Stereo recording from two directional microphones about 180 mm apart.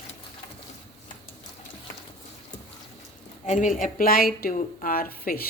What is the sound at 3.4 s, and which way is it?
A woman's voice, 45° left (ahead or behind).